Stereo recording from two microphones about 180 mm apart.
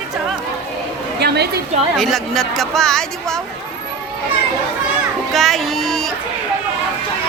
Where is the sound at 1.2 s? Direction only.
65° right (ahead or behind).